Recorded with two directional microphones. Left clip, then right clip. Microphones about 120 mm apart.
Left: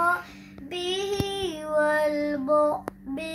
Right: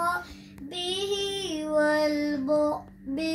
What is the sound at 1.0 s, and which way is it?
Child singing, 5° left (ahead or behind).